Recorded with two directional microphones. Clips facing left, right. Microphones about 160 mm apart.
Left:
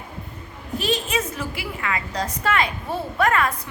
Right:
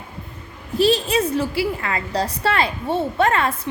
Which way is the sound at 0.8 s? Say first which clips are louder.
Right 7 dB; 35° right (ahead or behind).